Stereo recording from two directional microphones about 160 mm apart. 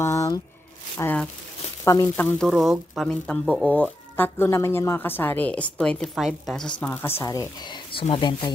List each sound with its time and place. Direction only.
0.0 s squish: 20° left (ahead or behind)
0.9 s speech: 10° left (ahead or behind)
2.4 s speech: centre (ahead or behind)
6.9 s speech: 15° left (ahead or behind)